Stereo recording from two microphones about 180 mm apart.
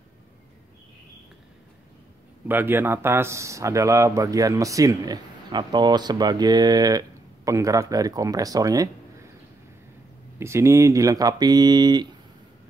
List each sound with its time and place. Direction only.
2.4 s speech: 10° right (ahead or behind)
10.4 s speech: 15° right (ahead or behind)